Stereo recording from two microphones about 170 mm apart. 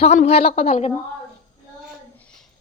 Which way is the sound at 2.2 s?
5° left (ahead or behind).